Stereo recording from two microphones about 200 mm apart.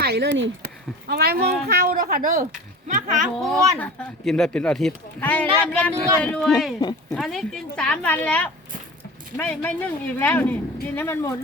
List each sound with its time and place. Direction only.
0.0 s speech: 55° right (ahead or behind); by 3.2 s 40° right (ahead or behind)
3.2 s speech: centre (ahead or behind)